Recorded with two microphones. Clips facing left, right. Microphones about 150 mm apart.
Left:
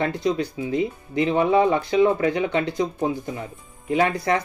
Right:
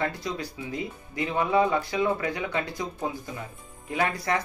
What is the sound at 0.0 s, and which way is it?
Speech, 20° left (ahead or behind).